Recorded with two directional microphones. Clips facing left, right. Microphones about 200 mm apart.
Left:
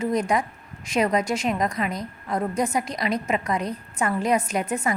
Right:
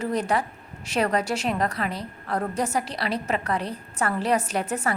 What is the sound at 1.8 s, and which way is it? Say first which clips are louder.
Speech: left 2 dB; 30° right (ahead or behind).